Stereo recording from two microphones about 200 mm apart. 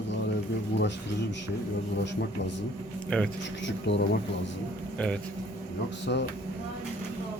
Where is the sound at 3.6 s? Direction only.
60° left (ahead or behind).